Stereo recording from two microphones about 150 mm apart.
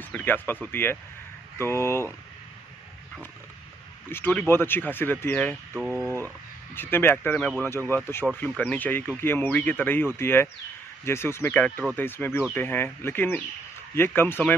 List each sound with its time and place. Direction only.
0.0 s speech: 10° left (ahead or behind)
4.1 s speech: 10° left (ahead or behind)
5.8 s speech: 10° right (ahead or behind)
6.7 s speech: 15° left (ahead or behind)